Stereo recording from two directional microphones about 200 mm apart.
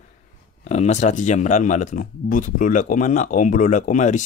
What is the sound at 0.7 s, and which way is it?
Speech, 35° left (ahead or behind).